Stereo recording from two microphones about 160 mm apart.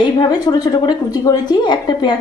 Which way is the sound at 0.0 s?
25° left (ahead or behind).